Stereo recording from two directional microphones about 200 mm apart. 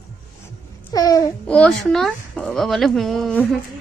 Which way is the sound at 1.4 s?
5° left (ahead or behind).